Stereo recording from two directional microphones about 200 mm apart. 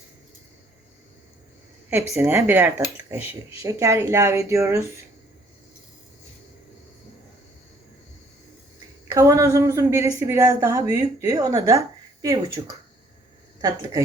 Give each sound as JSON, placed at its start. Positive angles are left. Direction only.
{"t": 1.9, "sound": "a woman's voice", "side_deg": -10}
{"t": 3.2, "sound": "speech", "side_deg": 30}
{"t": 3.6, "sound": "a woman's voice", "side_deg": -15}
{"t": 9.0, "sound": "a woman's voice", "side_deg": -15}